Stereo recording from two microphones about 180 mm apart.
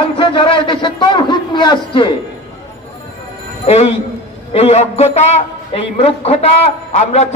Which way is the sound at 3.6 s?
35° left (ahead or behind).